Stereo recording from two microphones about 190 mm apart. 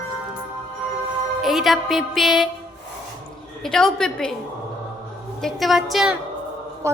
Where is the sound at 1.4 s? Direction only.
Centre (ahead or behind).